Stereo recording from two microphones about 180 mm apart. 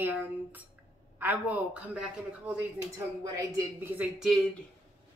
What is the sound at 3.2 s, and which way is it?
Speech, 20° right (ahead or behind).